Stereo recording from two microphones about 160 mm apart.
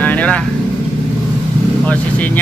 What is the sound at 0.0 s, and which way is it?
Vehicle, 10° left (ahead or behind).